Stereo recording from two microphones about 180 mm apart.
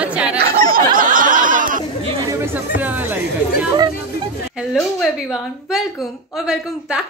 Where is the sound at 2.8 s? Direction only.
10° right (ahead or behind).